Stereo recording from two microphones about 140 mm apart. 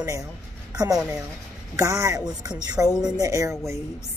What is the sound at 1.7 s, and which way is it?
Speech, 20° right (ahead or behind).